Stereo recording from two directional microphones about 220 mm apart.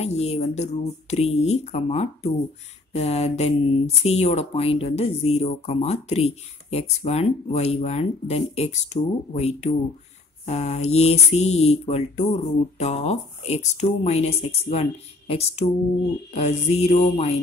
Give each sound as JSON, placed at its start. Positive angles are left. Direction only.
{"t": 0.0, "sound": "speech", "side_deg": 30}